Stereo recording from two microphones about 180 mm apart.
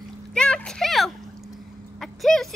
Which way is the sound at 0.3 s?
5° left (ahead or behind).